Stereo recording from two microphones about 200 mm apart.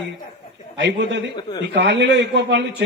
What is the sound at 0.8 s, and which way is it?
A man's voice, 60° right (ahead or behind).